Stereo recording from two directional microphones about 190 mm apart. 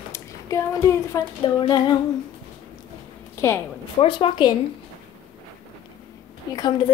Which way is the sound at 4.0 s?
25° left (ahead or behind).